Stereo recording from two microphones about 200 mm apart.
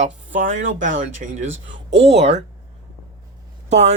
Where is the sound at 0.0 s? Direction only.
40° right (ahead or behind).